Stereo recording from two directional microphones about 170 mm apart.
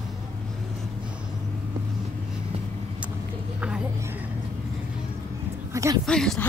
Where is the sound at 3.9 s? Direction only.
15° right (ahead or behind).